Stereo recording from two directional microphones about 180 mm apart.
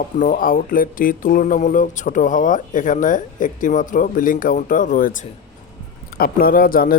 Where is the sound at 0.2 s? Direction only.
50° left (ahead or behind).